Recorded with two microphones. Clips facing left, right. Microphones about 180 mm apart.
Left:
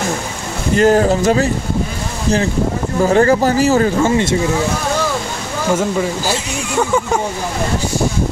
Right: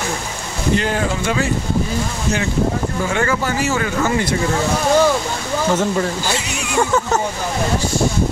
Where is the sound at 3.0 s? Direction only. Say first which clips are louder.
Left 10 dB; 35° left (ahead or behind).